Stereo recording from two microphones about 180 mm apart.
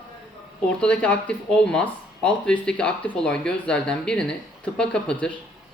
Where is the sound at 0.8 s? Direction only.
5° left (ahead or behind).